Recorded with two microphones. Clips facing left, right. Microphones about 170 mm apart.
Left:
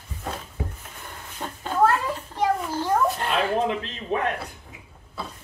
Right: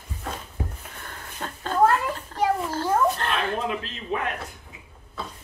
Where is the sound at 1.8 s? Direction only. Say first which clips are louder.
Right 1 dB; 10° right (ahead or behind).